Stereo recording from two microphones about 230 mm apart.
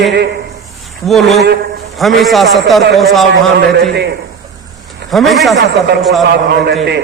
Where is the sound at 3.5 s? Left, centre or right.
Right.